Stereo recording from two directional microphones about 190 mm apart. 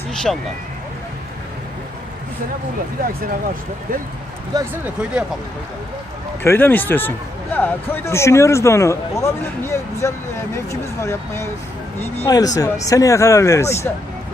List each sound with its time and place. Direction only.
0.1 s speech: 5° left (ahead or behind)
4.5 s speech: 10° right (ahead or behind)
6.4 s speech: 10° left (ahead or behind)